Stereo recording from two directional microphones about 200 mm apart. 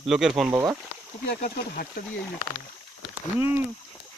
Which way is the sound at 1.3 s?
50° left (ahead or behind).